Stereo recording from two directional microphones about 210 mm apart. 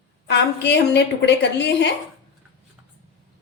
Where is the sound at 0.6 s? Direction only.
55° left (ahead or behind).